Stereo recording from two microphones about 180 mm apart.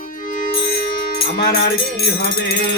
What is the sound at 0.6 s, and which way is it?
Music, 60° left (ahead or behind).